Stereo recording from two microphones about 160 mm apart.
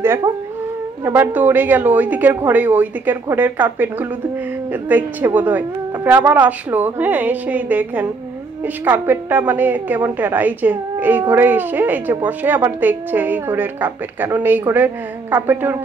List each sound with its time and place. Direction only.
0.0 s a woman's voice: 15° right (ahead or behind)